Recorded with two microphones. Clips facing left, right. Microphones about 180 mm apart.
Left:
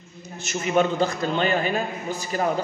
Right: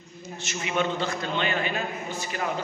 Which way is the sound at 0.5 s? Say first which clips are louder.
Left 6 dB; 40° left (ahead or behind).